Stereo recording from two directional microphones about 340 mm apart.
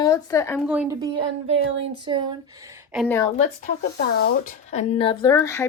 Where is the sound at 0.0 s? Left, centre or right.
Centre.